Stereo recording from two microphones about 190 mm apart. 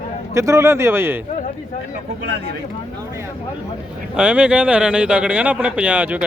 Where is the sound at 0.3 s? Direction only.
15° right (ahead or behind).